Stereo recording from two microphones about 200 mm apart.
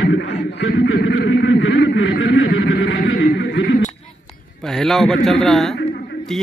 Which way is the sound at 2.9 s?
50° left (ahead or behind).